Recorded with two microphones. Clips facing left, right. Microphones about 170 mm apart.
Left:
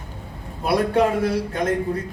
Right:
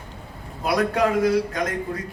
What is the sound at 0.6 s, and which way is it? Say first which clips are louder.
A man's voice: left 2 dB; 30° left (ahead or behind).